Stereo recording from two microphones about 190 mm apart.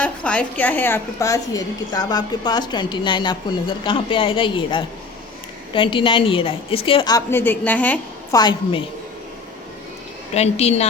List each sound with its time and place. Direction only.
0.0 s a woman's voice: 5° left (ahead or behind)
8.4 s a woman's voice: 20° left (ahead or behind)
10.3 s a woman's voice: 35° left (ahead or behind)